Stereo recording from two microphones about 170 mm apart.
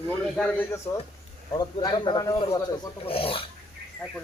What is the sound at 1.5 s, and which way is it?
Speech, 25° left (ahead or behind).